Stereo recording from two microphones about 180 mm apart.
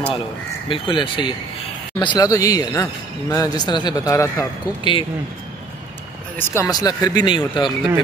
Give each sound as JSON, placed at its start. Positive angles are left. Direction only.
{"t": 0.7, "sound": "speech", "side_deg": 30}
{"t": 6.3, "sound": "speech", "side_deg": 15}